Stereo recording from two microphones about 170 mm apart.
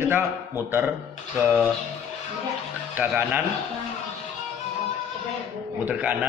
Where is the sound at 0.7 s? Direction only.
10° right (ahead or behind).